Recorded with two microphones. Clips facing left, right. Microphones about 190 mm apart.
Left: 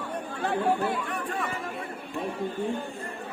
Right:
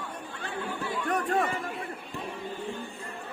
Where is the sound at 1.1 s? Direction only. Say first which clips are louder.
Right 5 dB; 40° right (ahead or behind).